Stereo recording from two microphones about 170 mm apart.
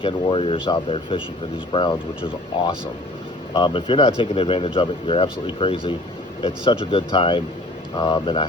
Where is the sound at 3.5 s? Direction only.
30° left (ahead or behind).